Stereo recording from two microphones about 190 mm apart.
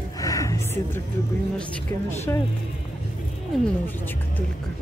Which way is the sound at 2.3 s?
15° left (ahead or behind).